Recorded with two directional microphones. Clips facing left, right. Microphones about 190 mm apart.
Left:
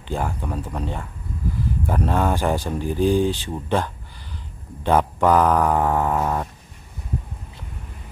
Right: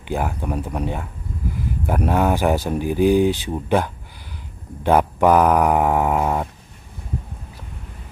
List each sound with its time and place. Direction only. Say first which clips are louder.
0.1 s speech: right 3 dB; 10° right (ahead or behind)